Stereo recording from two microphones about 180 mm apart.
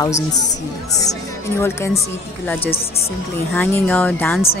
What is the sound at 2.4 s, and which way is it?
A woman's voice, 10° left (ahead or behind).